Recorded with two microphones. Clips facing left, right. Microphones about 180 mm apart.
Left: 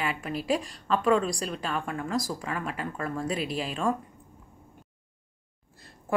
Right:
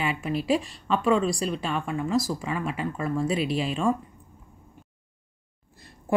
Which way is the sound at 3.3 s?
40° left (ahead or behind).